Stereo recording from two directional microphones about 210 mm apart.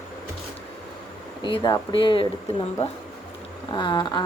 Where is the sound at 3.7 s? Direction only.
20° left (ahead or behind).